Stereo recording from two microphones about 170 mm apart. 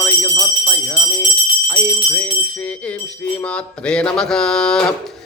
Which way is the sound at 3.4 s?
5° left (ahead or behind).